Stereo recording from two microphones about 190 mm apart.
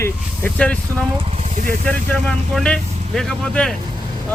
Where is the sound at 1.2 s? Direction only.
35° right (ahead or behind).